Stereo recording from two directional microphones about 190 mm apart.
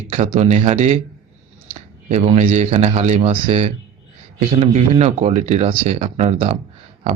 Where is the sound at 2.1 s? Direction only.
35° right (ahead or behind).